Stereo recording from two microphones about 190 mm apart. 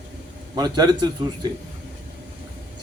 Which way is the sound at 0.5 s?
20° right (ahead or behind).